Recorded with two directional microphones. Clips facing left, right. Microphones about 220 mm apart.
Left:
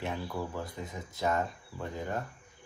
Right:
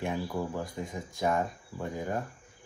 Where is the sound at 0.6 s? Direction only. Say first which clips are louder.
Right 3 dB; 45° right (ahead or behind).